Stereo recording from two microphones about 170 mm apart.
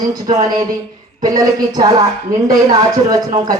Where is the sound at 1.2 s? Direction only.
20° right (ahead or behind).